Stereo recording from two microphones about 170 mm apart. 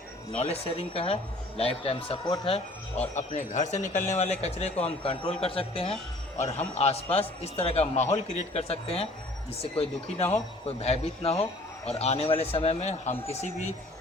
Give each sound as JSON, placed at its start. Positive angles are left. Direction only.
{"t": 0.3, "sound": "a man's voice", "side_deg": 35}
{"t": 3.2, "sound": "a man's voice", "side_deg": 45}